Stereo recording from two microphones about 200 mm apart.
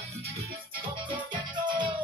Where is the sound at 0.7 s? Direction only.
25° right (ahead or behind).